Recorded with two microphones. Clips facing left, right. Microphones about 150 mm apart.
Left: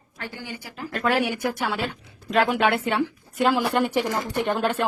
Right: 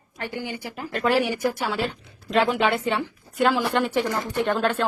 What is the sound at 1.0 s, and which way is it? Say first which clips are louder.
Speech: right 1 dB; centre (ahead or behind).